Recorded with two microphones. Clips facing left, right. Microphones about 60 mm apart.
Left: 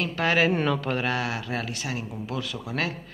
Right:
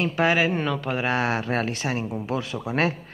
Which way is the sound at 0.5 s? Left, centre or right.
Centre.